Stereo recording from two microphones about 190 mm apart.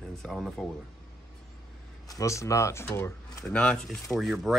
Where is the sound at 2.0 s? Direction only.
15° left (ahead or behind).